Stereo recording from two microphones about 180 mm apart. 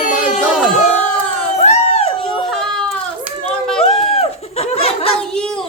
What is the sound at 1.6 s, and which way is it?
Crowd, 35° left (ahead or behind).